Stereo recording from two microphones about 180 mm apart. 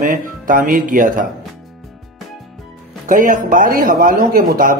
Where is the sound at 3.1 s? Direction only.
50° right (ahead or behind).